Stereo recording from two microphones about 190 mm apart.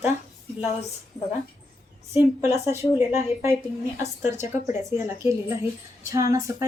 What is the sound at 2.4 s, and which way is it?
A woman's voice, 15° right (ahead or behind).